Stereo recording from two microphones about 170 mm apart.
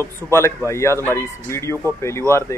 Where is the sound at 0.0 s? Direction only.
15° left (ahead or behind).